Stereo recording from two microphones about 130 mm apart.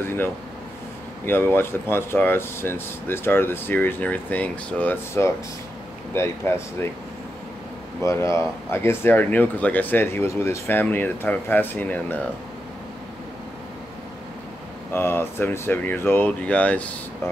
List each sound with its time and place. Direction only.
0.0 s air conditioning: 20° left (ahead or behind)
1.2 s speech: 15° left (ahead or behind)
8.0 s speech: 20° left (ahead or behind)
14.9 s speech: 20° left (ahead or behind)